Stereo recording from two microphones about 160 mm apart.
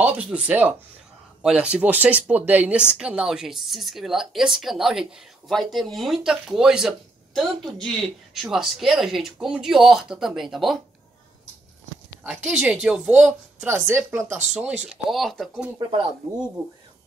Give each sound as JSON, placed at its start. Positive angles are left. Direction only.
{"t": 0.0, "sound": "speech", "side_deg": -5}
{"t": 12.2, "sound": "speech", "side_deg": -5}
{"t": 15.8, "sound": "speech", "side_deg": -35}